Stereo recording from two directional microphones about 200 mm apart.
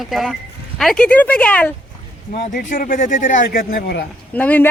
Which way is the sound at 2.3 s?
50° left (ahead or behind).